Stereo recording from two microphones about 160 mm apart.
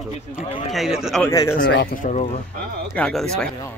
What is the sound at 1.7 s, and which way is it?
Speech, 90° left.